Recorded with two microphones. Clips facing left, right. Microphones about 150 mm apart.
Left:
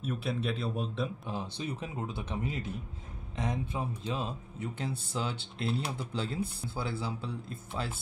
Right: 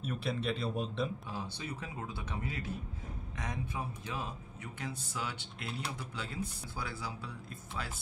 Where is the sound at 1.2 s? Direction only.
20° left (ahead or behind).